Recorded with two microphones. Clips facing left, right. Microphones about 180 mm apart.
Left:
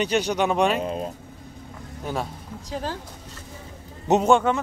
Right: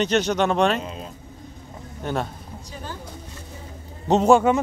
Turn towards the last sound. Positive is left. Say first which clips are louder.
# right 3 dB
turn(degrees=0)  # may be behind; listen again after turning